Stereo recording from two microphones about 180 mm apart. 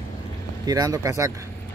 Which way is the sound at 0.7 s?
20° right (ahead or behind).